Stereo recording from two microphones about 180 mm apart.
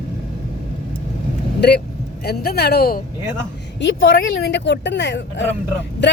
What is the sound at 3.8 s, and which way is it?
Speech, 90° left.